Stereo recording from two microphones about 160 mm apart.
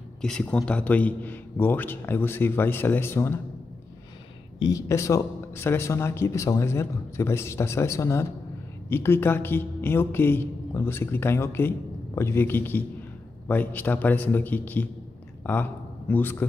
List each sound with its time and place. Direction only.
0.2 s speech: 5° left (ahead or behind)
4.6 s speech: 25° left (ahead or behind)